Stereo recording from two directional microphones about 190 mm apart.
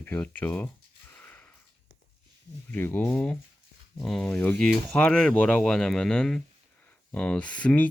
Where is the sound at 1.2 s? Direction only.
10° left (ahead or behind).